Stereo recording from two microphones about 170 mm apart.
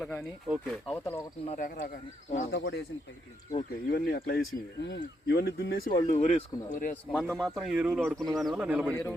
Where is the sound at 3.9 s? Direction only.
65° left (ahead or behind).